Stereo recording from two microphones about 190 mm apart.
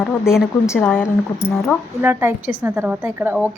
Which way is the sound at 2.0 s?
10° right (ahead or behind).